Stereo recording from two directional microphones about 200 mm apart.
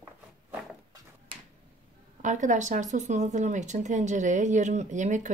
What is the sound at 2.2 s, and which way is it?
Speech, 40° right (ahead or behind).